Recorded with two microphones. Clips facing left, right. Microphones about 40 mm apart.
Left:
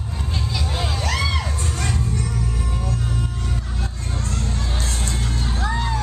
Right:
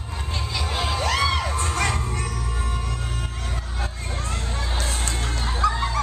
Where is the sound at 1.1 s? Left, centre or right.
Centre.